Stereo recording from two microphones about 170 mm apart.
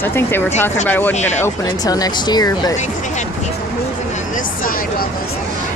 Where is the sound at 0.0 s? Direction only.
15° left (ahead or behind).